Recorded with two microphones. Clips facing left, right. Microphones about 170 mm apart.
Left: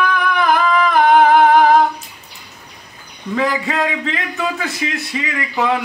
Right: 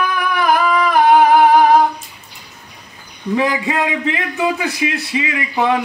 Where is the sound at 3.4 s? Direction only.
15° right (ahead or behind).